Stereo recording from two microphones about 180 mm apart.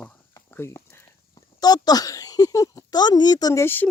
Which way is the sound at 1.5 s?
20° left (ahead or behind).